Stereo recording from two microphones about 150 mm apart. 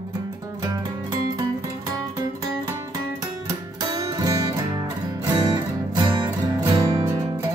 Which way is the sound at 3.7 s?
25° right (ahead or behind).